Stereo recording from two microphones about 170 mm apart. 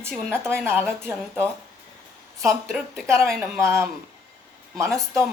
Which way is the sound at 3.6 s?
15° right (ahead or behind).